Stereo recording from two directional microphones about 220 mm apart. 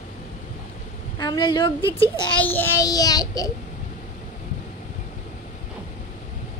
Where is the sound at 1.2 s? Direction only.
20° left (ahead or behind).